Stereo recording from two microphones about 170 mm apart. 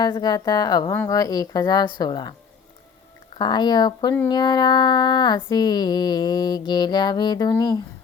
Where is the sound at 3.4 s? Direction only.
25° left (ahead or behind).